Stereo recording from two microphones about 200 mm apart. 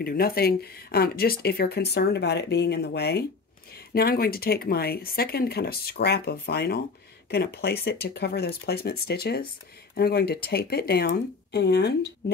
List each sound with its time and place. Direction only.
0.0 s speech: 50° left (ahead or behind)